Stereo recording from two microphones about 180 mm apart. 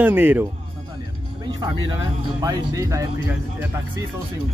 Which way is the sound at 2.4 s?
15° right (ahead or behind).